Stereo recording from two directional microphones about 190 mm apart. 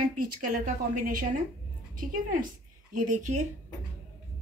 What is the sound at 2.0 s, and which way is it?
A woman's voice, 45° right (ahead or behind).